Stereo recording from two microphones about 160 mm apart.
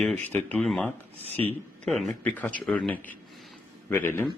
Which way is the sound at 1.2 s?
35° right (ahead or behind).